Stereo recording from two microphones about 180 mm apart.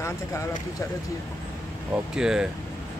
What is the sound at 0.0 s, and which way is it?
Speech, 15° left (ahead or behind).